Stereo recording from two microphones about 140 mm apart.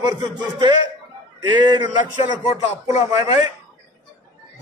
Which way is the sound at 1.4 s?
35° right (ahead or behind).